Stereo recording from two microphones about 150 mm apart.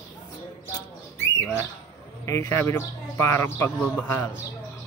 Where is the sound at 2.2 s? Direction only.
20° left (ahead or behind).